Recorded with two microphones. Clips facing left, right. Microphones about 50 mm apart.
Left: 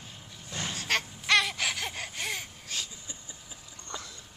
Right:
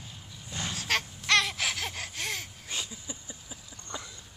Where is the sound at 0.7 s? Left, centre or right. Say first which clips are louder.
Even; centre.